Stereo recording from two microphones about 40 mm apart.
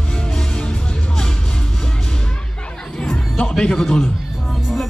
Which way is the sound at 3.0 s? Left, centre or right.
Left.